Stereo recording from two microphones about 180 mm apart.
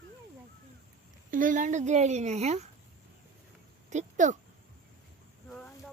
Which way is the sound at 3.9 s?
40° right (ahead or behind).